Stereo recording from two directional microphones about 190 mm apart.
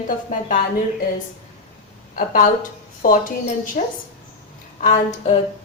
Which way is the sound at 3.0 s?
45° left (ahead or behind).